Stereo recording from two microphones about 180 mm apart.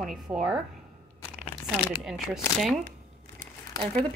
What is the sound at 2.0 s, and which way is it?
Speech, centre (ahead or behind).